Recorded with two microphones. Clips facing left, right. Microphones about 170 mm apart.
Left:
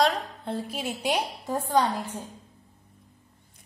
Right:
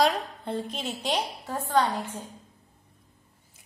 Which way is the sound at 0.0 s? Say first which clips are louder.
Even; centre (ahead or behind).